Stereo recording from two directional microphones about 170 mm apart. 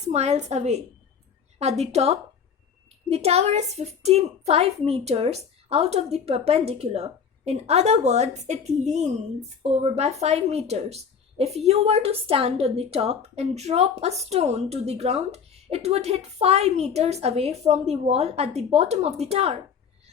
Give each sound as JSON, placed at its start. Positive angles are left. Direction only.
{"t": 0.1, "sound": "a woman's voice", "side_deg": -40}